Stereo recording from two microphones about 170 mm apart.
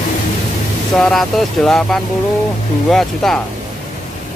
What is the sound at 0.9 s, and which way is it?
Speech, centre (ahead or behind).